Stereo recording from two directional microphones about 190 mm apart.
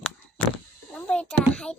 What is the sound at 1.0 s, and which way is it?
Speech, 5° left (ahead or behind).